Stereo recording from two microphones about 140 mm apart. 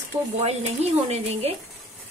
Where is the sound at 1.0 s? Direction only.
50° right (ahead or behind).